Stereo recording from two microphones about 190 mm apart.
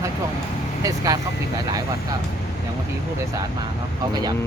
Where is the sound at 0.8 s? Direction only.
20° right (ahead or behind).